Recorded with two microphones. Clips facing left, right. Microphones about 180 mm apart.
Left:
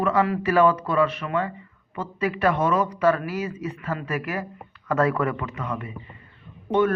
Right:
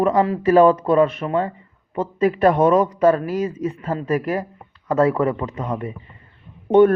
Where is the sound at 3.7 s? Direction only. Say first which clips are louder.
Right 7 dB; 30° right (ahead or behind).